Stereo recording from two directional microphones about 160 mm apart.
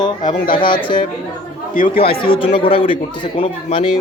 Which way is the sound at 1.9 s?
35° left (ahead or behind).